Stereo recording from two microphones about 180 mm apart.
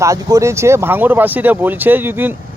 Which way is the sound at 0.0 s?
20° right (ahead or behind).